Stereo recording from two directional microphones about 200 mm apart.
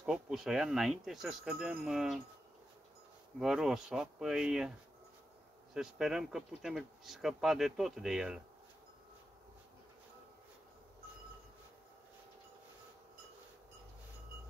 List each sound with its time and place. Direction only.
0.0 s speech: centre (ahead or behind)
3.3 s speech: centre (ahead or behind)
5.8 s speech: centre (ahead or behind)